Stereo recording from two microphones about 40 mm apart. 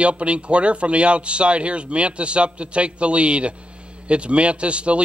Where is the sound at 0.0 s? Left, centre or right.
Right.